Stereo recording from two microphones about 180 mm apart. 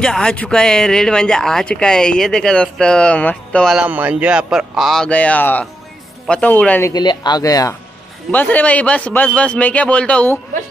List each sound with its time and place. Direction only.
0.0 s a man's voice: 5° left (ahead or behind)
6.9 s speech: 25° left (ahead or behind)
8.3 s a man's voice: 10° left (ahead or behind)